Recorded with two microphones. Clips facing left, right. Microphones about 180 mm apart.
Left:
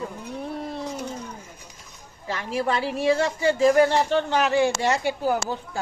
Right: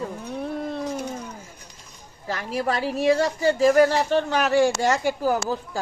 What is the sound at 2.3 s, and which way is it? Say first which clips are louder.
A woman's voice: even; 40° right (ahead or behind).